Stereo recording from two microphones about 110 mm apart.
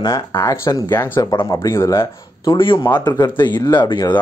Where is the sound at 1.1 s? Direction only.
35° left (ahead or behind).